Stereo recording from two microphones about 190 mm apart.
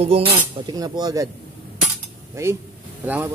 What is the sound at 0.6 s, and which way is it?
Speech, 20° right (ahead or behind).